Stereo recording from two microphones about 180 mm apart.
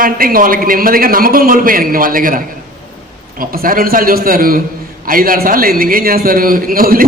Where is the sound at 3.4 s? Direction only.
55° right (ahead or behind).